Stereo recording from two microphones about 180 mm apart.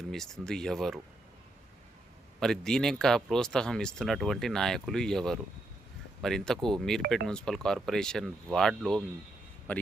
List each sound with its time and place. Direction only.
0.0 s speech: centre (ahead or behind)
2.4 s speech: 5° left (ahead or behind)